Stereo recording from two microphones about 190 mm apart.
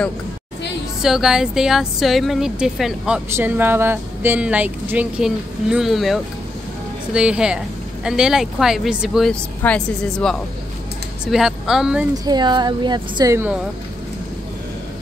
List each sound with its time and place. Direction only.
1.0 s speech: centre (ahead or behind)
12.1 s speech: 20° right (ahead or behind)